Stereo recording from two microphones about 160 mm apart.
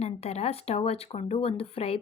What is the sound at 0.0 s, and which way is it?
A woman's voice, 40° left (ahead or behind).